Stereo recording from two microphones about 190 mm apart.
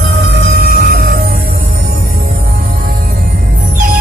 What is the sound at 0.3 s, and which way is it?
Music, 55° right (ahead or behind).